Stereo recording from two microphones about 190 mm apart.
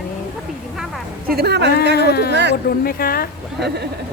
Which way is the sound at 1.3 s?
55° right (ahead or behind).